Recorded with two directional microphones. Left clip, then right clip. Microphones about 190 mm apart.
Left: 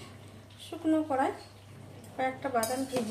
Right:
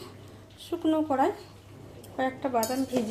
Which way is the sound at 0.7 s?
40° right (ahead or behind).